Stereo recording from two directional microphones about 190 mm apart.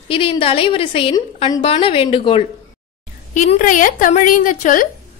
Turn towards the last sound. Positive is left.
turn(degrees=45)  # may be behind; listen again after turning